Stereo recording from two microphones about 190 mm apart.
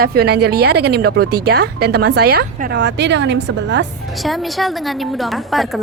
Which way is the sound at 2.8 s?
65° right (ahead or behind).